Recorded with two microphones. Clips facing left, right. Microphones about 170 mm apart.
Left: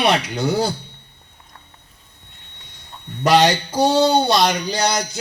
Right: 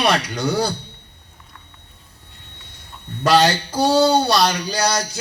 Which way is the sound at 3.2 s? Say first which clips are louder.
Left 1 dB; 20° left (ahead or behind).